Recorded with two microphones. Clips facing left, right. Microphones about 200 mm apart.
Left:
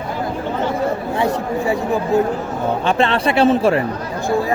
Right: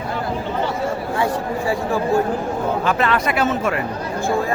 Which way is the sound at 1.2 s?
20° left (ahead or behind).